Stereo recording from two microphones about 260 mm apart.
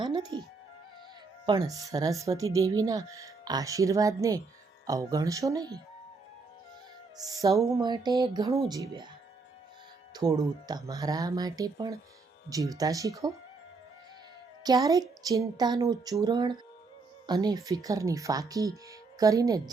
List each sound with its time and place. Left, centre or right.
0.0 s speech: centre
1.5 s speech: centre
7.2 s speech: centre
10.2 s speech: centre
14.6 s speech: centre